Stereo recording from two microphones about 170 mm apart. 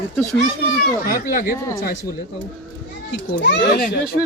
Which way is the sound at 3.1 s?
90° left.